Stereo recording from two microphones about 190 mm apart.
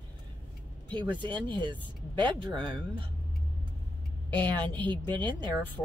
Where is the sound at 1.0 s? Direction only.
25° right (ahead or behind).